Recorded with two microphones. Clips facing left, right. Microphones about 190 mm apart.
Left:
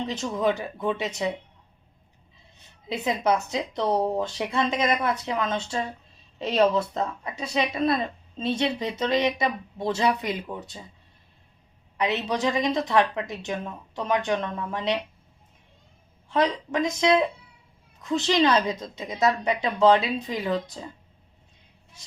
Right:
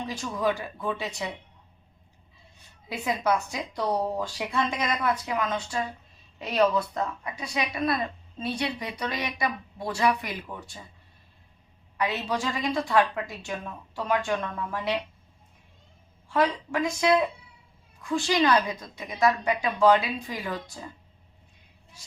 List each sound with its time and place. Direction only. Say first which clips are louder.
0.0 s speech: left 3 dB; 20° left (ahead or behind)
2.9 s speech: left 2 dB; 20° left (ahead or behind)
11.9 s speech: left 3 dB; 20° left (ahead or behind)
16.3 s speech: left 1 dB; 20° left (ahead or behind)